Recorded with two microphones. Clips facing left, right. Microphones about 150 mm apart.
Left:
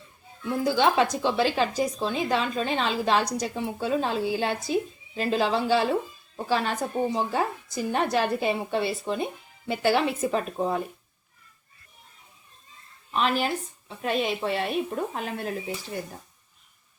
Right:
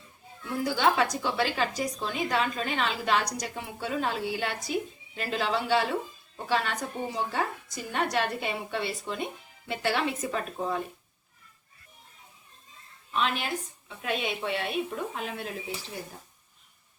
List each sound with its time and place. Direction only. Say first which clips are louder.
0.6 s speech: left 3 dB; 25° left (ahead or behind)
13.1 s speech: left 4 dB; 35° left (ahead or behind)